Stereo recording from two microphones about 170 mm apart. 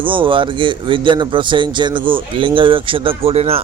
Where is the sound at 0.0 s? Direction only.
30° right (ahead or behind).